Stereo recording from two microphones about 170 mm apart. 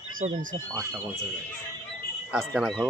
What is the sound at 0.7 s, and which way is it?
Speech, 15° right (ahead or behind).